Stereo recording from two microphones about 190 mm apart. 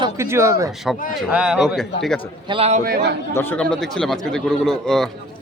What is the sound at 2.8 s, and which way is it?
Speech, 55° right (ahead or behind).